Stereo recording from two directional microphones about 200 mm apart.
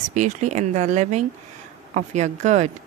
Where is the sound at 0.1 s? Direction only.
35° right (ahead or behind).